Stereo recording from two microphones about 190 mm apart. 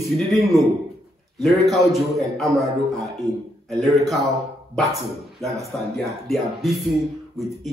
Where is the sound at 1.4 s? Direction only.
Centre (ahead or behind).